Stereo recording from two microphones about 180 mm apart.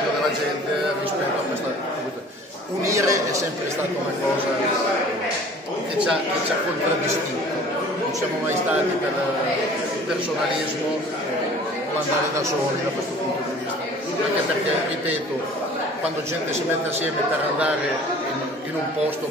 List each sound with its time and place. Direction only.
2.8 s a man's voice: 15° right (ahead or behind)